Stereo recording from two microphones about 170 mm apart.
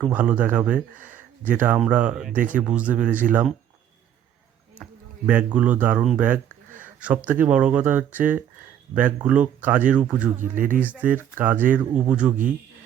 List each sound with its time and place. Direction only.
0.1 s speech: 10° right (ahead or behind)
2.3 s speech: 50° right (ahead or behind)
2.6 s speech: 5° right (ahead or behind)
4.8 s a sound: 5° right (ahead or behind)
5.5 s speech: 10° right (ahead or behind)
10.5 s speech: 50° right (ahead or behind)
11.2 s speech: 10° right (ahead or behind)